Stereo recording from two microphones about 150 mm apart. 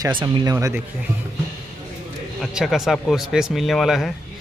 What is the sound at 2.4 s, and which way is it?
A man's voice, 5° right (ahead or behind).